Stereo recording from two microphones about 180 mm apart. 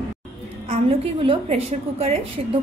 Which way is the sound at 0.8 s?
30° right (ahead or behind).